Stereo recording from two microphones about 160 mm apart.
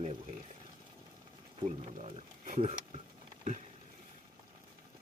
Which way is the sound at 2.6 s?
40° right (ahead or behind).